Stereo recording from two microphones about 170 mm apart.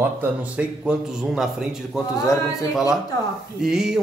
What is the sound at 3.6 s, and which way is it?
Speech, 5° right (ahead or behind).